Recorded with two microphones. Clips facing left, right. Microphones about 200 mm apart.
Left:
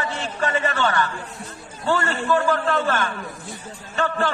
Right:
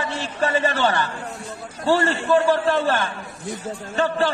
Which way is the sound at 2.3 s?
30° right (ahead or behind).